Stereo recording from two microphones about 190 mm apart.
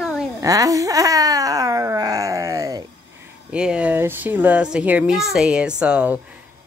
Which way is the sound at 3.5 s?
5° right (ahead or behind).